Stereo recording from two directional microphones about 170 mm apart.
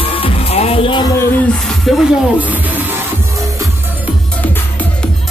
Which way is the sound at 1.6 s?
Centre (ahead or behind).